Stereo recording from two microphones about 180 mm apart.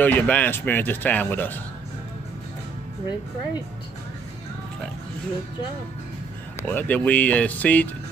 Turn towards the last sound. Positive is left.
turn(degrees=10)  # may be behind; listen again after turning